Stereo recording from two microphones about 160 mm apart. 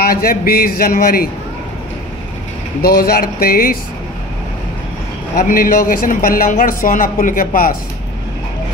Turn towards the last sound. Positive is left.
turn(degrees=60)  # may be behind; listen again after turning